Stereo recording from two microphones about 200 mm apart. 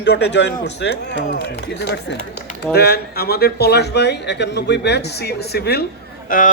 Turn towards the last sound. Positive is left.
turn(degrees=45)  # may be behind; listen again after turning